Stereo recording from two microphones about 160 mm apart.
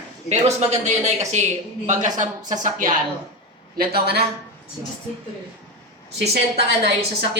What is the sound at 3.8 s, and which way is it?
Speech, 80° right.